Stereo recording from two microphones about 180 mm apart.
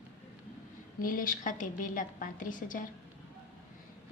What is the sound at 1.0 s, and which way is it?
Speech, 50° left (ahead or behind).